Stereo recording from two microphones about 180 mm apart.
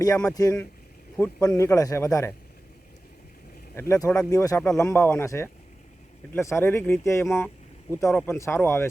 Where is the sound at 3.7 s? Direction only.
15° left (ahead or behind).